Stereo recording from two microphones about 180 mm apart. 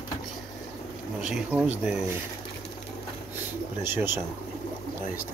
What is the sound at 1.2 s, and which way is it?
Speech, 5° right (ahead or behind).